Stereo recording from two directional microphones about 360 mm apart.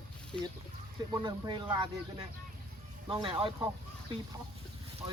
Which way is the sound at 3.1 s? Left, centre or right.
Centre.